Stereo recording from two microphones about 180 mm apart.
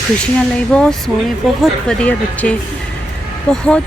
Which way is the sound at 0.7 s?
5° left (ahead or behind).